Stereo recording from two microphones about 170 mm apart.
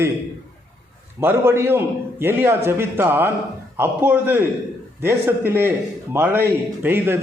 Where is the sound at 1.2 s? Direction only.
15° right (ahead or behind).